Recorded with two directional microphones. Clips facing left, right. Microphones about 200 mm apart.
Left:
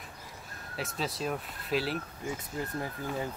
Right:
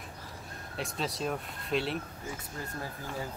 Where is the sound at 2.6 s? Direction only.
20° left (ahead or behind).